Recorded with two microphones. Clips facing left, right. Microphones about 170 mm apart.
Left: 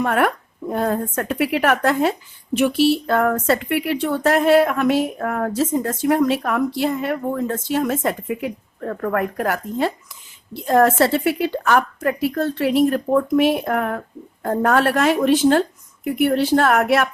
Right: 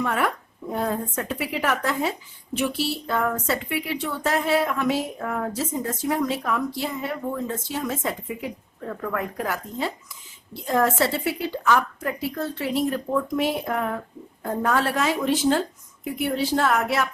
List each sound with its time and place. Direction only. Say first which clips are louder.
0.0 s speech: left 6 dB; 60° left (ahead or behind)